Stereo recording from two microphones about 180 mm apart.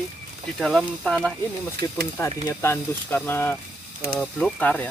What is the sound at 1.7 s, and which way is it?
Speech, 60° right (ahead or behind).